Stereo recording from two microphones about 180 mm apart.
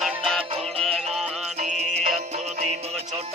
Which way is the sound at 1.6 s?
45° right (ahead or behind).